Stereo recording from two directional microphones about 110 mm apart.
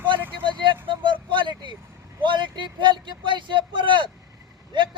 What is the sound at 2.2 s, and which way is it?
Speech, 45° right (ahead or behind).